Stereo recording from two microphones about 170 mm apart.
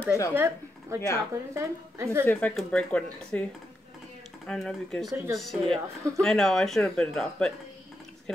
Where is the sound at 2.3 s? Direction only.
10° left (ahead or behind).